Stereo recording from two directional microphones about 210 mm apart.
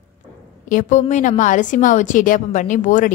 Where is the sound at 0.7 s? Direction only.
40° left (ahead or behind).